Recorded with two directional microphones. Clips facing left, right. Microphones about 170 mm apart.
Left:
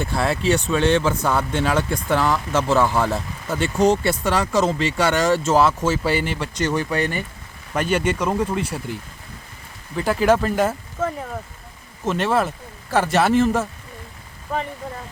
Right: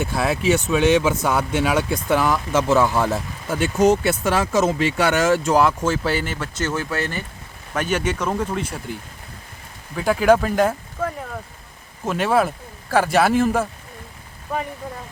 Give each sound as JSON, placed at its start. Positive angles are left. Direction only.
{"t": 0.0, "sound": "speech", "side_deg": -5}
{"t": 0.7, "sound": "speech", "side_deg": -15}
{"t": 4.7, "sound": "speech", "side_deg": -15}
{"t": 5.1, "sound": "speech", "side_deg": -5}
{"t": 8.2, "sound": "speech", "side_deg": 10}
{"t": 9.9, "sound": "speech", "side_deg": 0}